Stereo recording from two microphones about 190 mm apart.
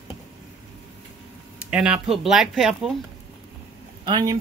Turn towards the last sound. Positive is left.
turn(degrees=-20)  # may be behind; listen again after turning